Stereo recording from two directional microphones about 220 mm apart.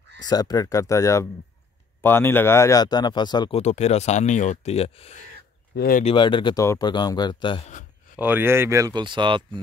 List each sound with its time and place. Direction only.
0.2 s speech: 15° left (ahead or behind)
5.8 s speech: 40° left (ahead or behind)
6.0 s speech: 20° left (ahead or behind)
8.2 s speech: 10° right (ahead or behind)